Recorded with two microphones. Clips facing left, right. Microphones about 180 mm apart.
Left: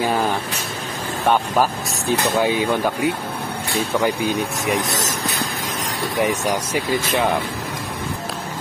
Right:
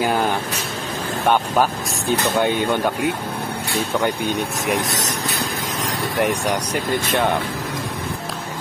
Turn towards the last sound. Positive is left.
turn(degrees=0)  # may be behind; listen again after turning